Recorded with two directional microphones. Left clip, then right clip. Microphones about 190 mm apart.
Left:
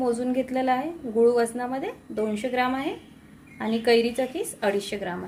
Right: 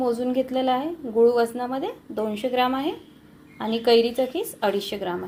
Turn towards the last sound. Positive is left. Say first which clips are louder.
# right 2 dB
turn(degrees=-5)  # may be behind; listen again after turning